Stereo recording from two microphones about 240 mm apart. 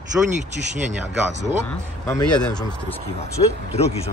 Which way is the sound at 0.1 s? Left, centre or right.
Centre.